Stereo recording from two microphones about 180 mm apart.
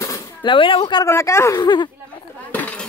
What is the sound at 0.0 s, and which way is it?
Speech, 20° left (ahead or behind).